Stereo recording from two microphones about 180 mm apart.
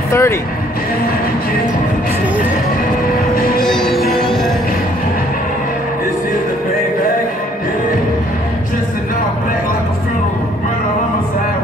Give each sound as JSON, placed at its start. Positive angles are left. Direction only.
{"t": 0.1, "sound": "speech", "side_deg": 15}
{"t": 3.6, "sound": "music", "side_deg": 5}